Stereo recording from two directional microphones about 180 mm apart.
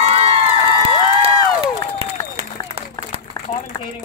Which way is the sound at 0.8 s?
35° right (ahead or behind).